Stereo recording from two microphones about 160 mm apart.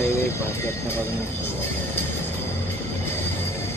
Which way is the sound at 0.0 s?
15° left (ahead or behind).